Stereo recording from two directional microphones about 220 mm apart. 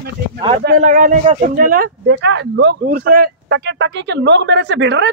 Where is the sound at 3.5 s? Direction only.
55° right (ahead or behind).